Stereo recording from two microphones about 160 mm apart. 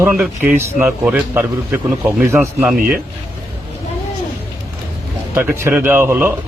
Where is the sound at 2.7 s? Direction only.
65° right (ahead or behind).